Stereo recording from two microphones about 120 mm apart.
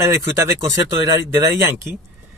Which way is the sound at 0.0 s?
25° right (ahead or behind).